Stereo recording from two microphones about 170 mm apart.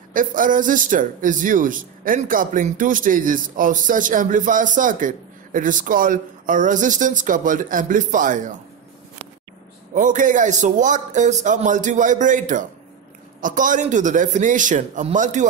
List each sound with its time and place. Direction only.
0.1 s a man's voice: 50° right (ahead or behind)
9.9 s a man's voice: 50° right (ahead or behind)